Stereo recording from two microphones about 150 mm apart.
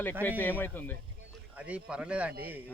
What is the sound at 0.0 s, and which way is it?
Speech, 10° left (ahead or behind).